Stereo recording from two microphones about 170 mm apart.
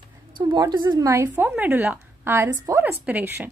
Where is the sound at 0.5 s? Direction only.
25° right (ahead or behind).